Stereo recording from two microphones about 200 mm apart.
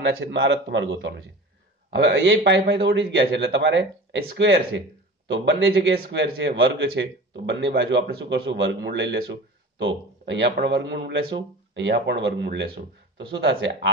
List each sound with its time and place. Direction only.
0.1 s speech: 60° right (ahead or behind)